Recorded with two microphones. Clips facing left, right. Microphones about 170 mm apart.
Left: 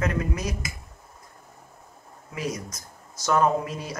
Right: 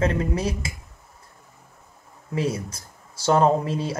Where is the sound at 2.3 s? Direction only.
30° right (ahead or behind).